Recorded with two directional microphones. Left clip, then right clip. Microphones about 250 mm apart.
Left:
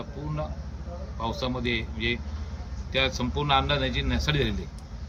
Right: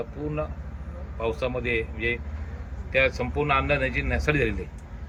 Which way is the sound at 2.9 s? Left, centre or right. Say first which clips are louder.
Right 4 dB; centre.